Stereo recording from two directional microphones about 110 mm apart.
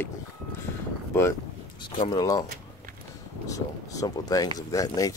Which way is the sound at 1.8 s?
50° left (ahead or behind).